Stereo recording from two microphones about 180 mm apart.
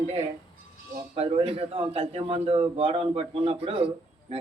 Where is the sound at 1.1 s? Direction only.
35° right (ahead or behind).